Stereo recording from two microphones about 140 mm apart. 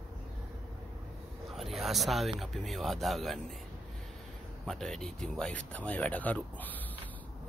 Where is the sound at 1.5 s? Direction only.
Centre (ahead or behind).